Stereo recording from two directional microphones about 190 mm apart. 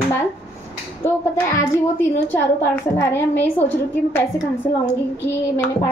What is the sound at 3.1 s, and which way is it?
Speech, 10° left (ahead or behind).